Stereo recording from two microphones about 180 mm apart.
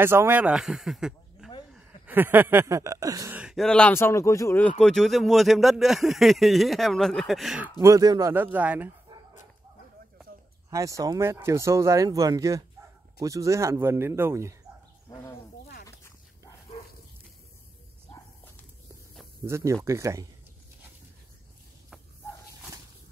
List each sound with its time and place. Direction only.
0.0 s speech: 10° right (ahead or behind)
3.3 s speech: centre (ahead or behind)
7.8 s speech: 20° right (ahead or behind)
10.7 s speech: 15° right (ahead or behind)
15.6 s snake: 60° left (ahead or behind)
19.4 s speech: 15° right (ahead or behind)